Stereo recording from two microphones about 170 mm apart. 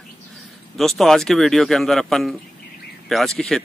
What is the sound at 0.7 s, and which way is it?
Speech, centre (ahead or behind).